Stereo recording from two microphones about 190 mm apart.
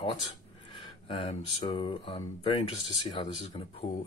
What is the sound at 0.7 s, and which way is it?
Speech, 25° left (ahead or behind).